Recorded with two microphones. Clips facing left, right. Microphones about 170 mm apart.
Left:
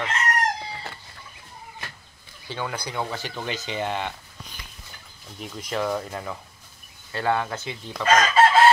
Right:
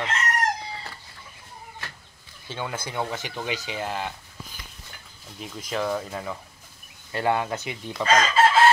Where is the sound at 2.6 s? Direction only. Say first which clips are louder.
Even; 20° right (ahead or behind); by 4.1 s 5° right (ahead or behind).